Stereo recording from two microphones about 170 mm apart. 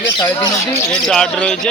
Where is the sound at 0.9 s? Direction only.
5° left (ahead or behind).